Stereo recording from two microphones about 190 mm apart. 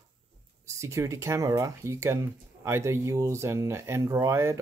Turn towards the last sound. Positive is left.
turn(degrees=-15)  # may be behind; listen again after turning